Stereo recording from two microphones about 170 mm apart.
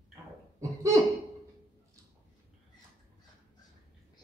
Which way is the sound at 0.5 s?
20° right (ahead or behind).